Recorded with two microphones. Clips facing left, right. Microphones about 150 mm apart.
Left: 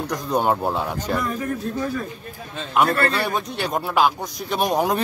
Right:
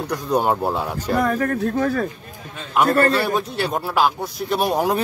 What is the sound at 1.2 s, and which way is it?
Speech, 75° right (ahead or behind).